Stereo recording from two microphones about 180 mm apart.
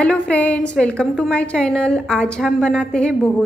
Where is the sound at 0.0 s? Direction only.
5° left (ahead or behind).